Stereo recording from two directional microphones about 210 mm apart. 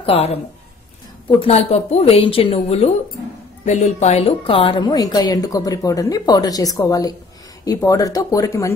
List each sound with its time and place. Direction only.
0.0 s a woman's voice: 30° left (ahead or behind)
1.4 s a woman's voice: 30° left (ahead or behind)